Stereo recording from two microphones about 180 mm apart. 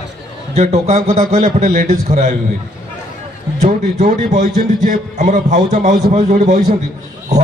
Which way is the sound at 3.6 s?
40° right (ahead or behind).